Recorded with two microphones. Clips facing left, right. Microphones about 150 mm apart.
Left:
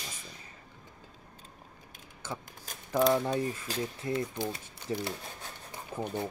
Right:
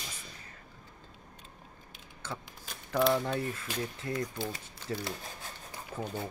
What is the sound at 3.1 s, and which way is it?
Speech, 15° left (ahead or behind).